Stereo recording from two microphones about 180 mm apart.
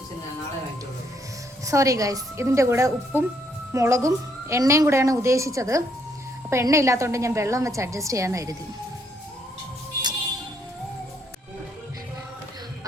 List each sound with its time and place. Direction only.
1.6 s a woman's voice: 20° right (ahead or behind)